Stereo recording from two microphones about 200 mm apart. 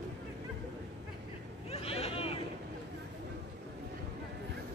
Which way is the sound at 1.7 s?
30° left (ahead or behind).